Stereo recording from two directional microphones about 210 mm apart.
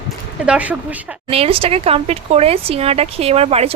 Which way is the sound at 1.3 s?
25° right (ahead or behind).